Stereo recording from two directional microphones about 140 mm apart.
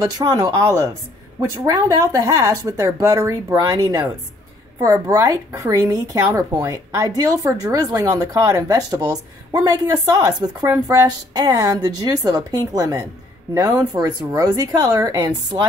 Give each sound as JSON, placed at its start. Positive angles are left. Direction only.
{"t": 0.0, "sound": "speech", "side_deg": -30}